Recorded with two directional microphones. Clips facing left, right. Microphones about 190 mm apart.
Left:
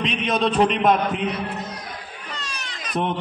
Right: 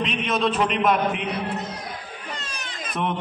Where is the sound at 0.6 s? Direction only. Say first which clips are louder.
Left 3 dB; 35° left (ahead or behind).